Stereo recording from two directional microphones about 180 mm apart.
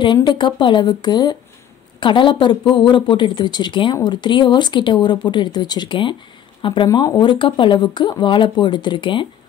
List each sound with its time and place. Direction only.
0.0 s speech: 25° left (ahead or behind)